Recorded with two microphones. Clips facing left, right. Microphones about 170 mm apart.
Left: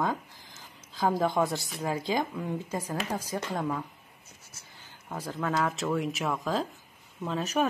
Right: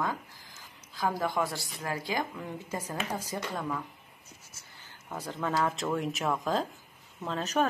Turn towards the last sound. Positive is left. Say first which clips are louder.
# left 1 dB
turn(degrees=10)  # may be behind; listen again after turning